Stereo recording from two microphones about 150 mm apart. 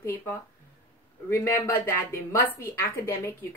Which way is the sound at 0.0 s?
15° left (ahead or behind).